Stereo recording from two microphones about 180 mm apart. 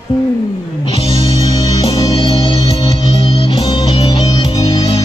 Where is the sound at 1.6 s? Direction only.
25° left (ahead or behind).